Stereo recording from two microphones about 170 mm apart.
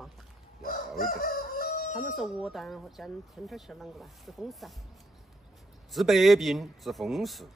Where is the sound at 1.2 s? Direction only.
50° left (ahead or behind).